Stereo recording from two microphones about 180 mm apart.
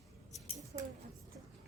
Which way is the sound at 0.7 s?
45° right (ahead or behind).